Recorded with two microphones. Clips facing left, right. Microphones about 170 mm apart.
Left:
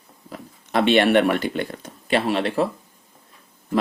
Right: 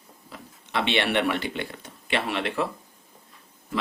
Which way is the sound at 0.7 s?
45° left (ahead or behind).